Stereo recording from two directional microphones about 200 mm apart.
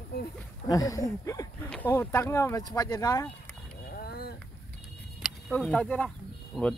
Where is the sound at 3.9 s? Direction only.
50° left (ahead or behind).